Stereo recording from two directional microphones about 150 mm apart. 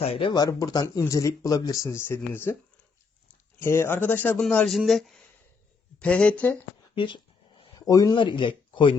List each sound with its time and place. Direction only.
0.0 s speech: 40° left (ahead or behind); by 2.6 s 15° left (ahead or behind)
3.6 s speech: 15° left (ahead or behind)
6.9 s a sound: 35° left (ahead or behind)